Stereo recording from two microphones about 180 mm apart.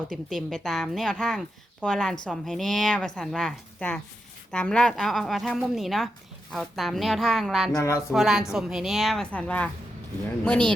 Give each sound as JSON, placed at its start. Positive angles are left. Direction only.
{"t": 0.1, "sound": "a woman's voice", "side_deg": 0}
{"t": 7.8, "sound": "a sound", "side_deg": 15}
{"t": 8.1, "sound": "a woman's voice", "side_deg": -5}